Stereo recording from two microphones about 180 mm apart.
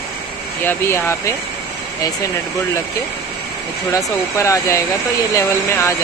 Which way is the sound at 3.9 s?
15° left (ahead or behind).